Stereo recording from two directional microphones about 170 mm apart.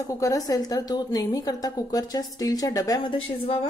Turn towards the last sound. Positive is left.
turn(degrees=35)  # may be behind; listen again after turning